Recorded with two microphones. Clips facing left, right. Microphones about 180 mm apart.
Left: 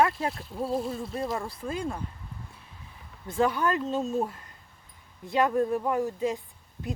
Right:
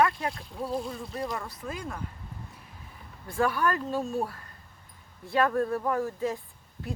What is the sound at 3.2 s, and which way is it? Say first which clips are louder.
A woman's voice: left 1 dB; 20° left (ahead or behind).